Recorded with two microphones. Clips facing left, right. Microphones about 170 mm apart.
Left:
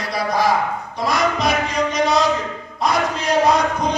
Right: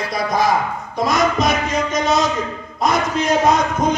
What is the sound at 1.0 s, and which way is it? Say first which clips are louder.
A man's voice: right 2 dB; 45° right (ahead or behind).